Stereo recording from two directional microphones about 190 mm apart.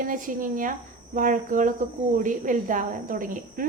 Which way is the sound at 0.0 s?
45° right (ahead or behind).